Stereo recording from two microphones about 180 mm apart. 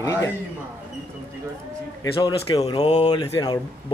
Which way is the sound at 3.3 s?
20° left (ahead or behind).